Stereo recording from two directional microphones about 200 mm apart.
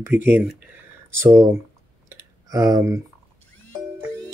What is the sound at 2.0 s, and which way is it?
Clicking, 15° right (ahead or behind).